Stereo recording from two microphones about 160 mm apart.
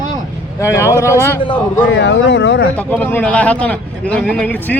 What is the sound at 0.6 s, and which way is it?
Speech, 15° left (ahead or behind).